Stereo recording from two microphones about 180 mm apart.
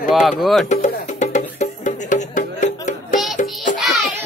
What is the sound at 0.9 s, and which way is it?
Music, 45° left (ahead or behind).